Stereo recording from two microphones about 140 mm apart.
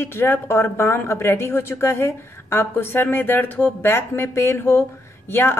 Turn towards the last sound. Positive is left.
turn(degrees=15)  # may be behind; listen again after turning